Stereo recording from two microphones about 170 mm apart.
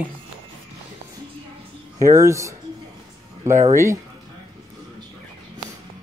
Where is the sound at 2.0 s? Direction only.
15° right (ahead or behind).